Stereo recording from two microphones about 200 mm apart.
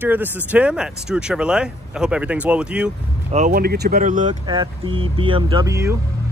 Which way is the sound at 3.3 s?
40° right (ahead or behind).